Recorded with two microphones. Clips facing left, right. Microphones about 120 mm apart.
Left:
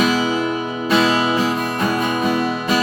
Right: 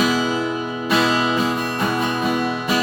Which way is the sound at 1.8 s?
Centre (ahead or behind).